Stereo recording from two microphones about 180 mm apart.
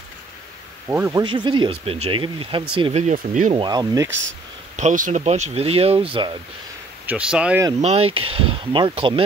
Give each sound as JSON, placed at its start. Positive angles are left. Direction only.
{"t": 0.8, "sound": "speech", "side_deg": -15}
{"t": 1.2, "sound": "speech", "side_deg": -25}
{"t": 3.5, "sound": "speech", "side_deg": -25}
{"t": 4.7, "sound": "speech", "side_deg": -45}
{"t": 7.1, "sound": "speech", "side_deg": -5}
{"t": 7.8, "sound": "speech", "side_deg": -35}